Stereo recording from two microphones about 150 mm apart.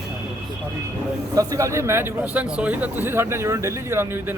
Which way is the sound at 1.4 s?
20° right (ahead or behind).